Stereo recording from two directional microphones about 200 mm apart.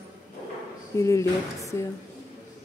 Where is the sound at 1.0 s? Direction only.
15° left (ahead or behind).